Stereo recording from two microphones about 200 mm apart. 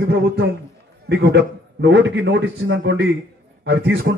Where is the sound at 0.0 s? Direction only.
60° right (ahead or behind).